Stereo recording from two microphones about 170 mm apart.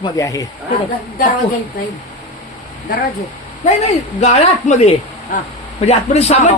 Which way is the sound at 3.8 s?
40° left (ahead or behind).